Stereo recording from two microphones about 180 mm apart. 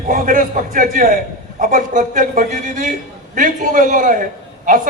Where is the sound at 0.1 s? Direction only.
50° right (ahead or behind).